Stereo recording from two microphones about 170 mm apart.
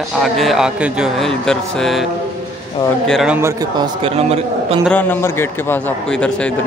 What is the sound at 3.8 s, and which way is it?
A man's voice, 35° right (ahead or behind).